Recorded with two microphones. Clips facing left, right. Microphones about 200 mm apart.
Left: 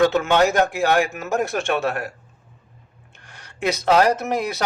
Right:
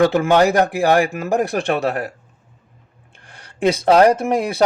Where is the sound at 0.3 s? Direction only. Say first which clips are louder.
Right 3 dB; 35° right (ahead or behind).